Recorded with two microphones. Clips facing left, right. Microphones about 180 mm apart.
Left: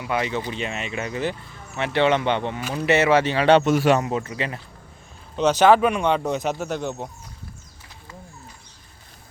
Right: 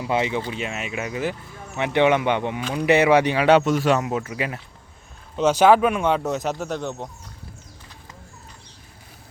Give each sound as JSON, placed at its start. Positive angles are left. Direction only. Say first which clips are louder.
{"t": 0.0, "sound": "speech", "louder": "right 2 dB", "side_deg": -20}
{"t": 0.5, "sound": "speech", "louder": "even", "side_deg": -5}
{"t": 3.7, "sound": "speech", "louder": "left 1 dB", "side_deg": 5}